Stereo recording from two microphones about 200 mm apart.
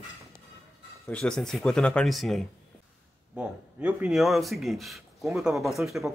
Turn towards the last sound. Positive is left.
turn(degrees=0)  # may be behind; listen again after turning